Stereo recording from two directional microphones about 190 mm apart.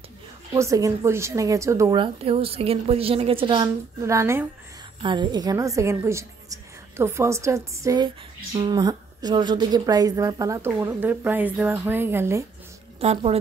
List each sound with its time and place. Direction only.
0.6 s a woman's voice: 15° right (ahead or behind)
13.0 s a woman's voice: 35° right (ahead or behind)